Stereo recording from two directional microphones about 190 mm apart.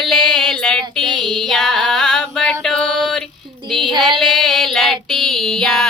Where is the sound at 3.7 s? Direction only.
25° right (ahead or behind).